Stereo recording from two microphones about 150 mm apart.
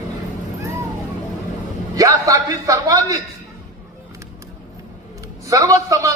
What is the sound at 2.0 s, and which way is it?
A man's voice, 20° right (ahead or behind).